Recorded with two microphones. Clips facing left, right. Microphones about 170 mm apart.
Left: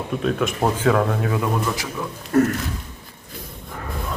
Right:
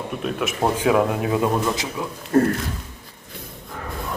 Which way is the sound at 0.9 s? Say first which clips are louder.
Right 1 dB; 15° right (ahead or behind).